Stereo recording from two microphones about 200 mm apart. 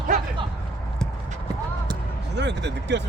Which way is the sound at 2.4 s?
60° right (ahead or behind).